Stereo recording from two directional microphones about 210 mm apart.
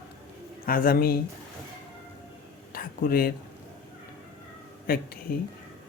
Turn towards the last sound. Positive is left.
turn(degrees=45)  # may be behind; listen again after turning